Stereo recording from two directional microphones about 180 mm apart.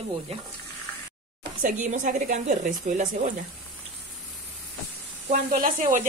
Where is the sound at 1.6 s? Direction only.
45° right (ahead or behind).